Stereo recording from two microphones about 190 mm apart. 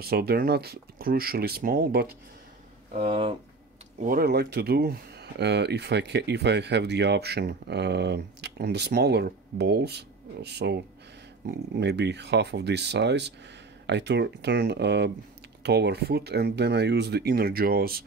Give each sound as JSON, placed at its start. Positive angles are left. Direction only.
{"t": 0.0, "sound": "speech", "side_deg": -55}
{"t": 3.0, "sound": "speech", "side_deg": -30}
{"t": 4.0, "sound": "speech", "side_deg": -50}